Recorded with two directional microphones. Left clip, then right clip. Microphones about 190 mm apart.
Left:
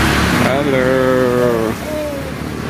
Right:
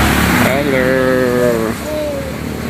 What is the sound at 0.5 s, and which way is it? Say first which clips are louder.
Vehicle: right 1 dB; 5° left (ahead or behind).